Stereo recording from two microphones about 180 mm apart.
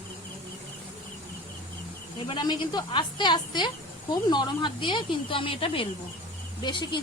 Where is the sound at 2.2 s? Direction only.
25° left (ahead or behind).